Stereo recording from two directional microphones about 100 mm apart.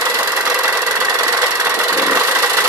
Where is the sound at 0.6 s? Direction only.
20° right (ahead or behind).